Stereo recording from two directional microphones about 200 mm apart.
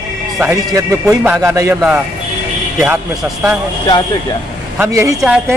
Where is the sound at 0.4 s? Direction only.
15° right (ahead or behind).